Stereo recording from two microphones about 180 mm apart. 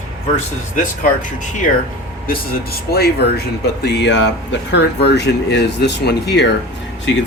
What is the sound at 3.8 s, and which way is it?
Speech, 75° left (ahead or behind).